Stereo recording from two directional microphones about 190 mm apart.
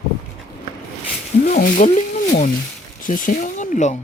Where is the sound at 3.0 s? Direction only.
45° left (ahead or behind).